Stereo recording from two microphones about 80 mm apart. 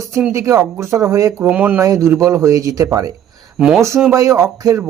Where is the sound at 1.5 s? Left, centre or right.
Centre.